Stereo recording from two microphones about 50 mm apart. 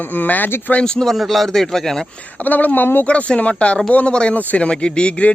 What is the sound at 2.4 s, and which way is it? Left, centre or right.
Speech, left.